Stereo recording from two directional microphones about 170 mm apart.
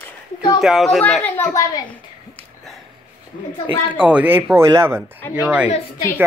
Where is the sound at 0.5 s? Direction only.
Centre (ahead or behind).